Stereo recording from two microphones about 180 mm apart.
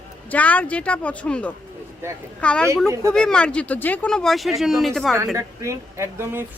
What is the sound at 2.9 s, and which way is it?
Speech, 15° right (ahead or behind).